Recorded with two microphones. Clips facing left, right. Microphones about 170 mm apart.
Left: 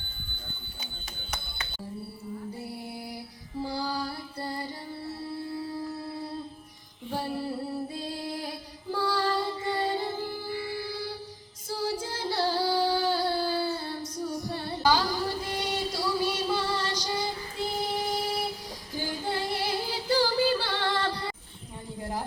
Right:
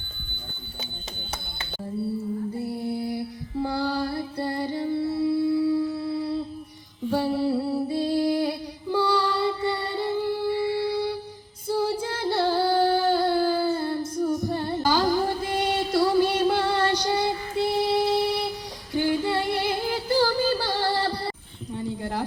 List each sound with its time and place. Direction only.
3.6 s music: 60° right (ahead or behind)
7.1 s a sound: 75° right (ahead or behind)
11.7 s singing: 60° right (ahead or behind)
18.9 s music: 70° right (ahead or behind); by 21.3 s 35° right (ahead or behind)